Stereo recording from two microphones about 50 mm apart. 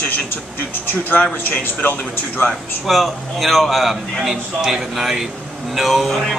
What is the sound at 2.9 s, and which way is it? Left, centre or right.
A man's voice, centre.